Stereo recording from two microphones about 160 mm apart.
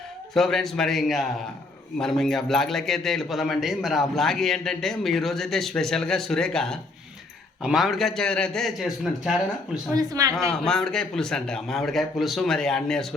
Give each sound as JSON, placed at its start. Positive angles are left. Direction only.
{"t": 0.3, "sound": "a man's voice", "side_deg": 0}
{"t": 9.9, "sound": "speech", "side_deg": -25}
{"t": 10.3, "sound": "a man's voice", "side_deg": 0}